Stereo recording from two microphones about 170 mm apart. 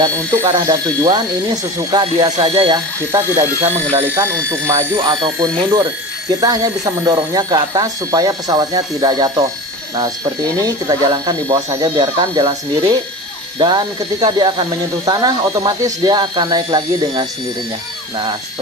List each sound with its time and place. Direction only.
0.0 s speech: 25° right (ahead or behind)
10.6 s speech: 25° right (ahead or behind)